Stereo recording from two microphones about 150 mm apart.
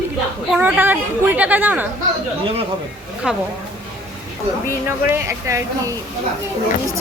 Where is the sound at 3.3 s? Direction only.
5° right (ahead or behind).